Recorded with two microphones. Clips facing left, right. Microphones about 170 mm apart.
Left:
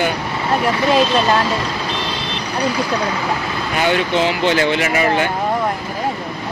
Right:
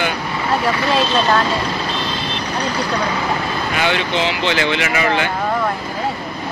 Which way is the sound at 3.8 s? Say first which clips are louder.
Left 4 dB; 45° left (ahead or behind).